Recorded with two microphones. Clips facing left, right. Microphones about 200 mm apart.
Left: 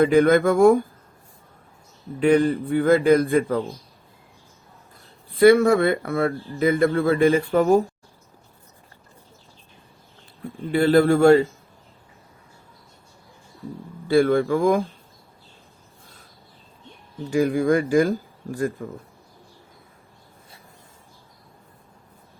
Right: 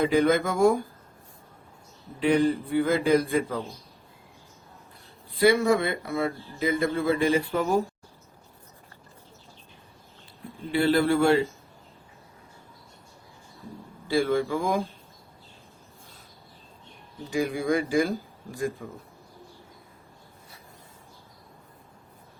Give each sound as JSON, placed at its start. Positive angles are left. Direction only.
{"t": 0.0, "sound": "a man's voice", "side_deg": 55}
{"t": 2.1, "sound": "a man's voice", "side_deg": 50}
{"t": 5.4, "sound": "a man's voice", "side_deg": 55}
{"t": 10.7, "sound": "a man's voice", "side_deg": 45}
{"t": 14.1, "sound": "speech", "side_deg": 55}
{"t": 17.3, "sound": "a man's voice", "side_deg": 50}